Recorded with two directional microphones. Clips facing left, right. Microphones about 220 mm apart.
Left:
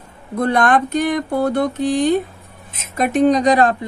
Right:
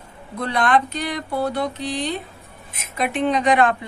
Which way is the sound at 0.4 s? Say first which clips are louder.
Left 4 dB; 50° left (ahead or behind).